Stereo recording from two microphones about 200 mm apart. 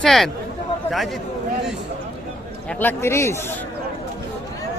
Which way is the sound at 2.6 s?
10° left (ahead or behind).